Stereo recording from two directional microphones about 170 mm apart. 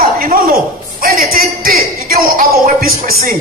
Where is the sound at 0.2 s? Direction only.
55° right (ahead or behind).